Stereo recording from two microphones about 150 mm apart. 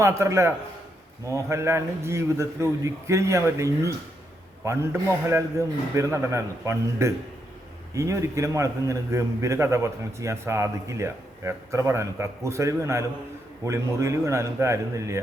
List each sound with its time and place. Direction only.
0.0 s a man's voice: 20° right (ahead or behind)